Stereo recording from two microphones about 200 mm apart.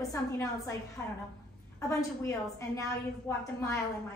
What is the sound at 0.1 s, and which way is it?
Speech, 15° left (ahead or behind).